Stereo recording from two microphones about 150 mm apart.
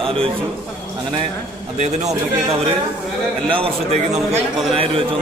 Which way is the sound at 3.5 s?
45° right (ahead or behind).